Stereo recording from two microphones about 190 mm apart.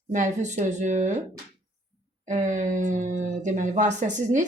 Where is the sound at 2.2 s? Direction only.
40° right (ahead or behind).